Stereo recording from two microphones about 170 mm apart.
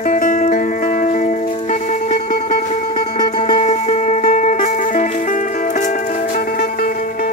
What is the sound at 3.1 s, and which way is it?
Music, 25° left (ahead or behind).